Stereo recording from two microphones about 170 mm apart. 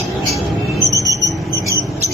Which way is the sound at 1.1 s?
20° right (ahead or behind).